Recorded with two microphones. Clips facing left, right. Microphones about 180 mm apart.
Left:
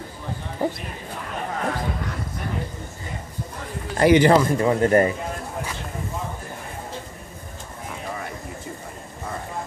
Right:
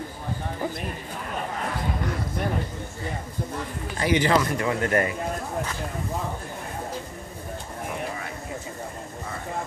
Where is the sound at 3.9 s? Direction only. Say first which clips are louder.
Left 8 dB; 60° left (ahead or behind).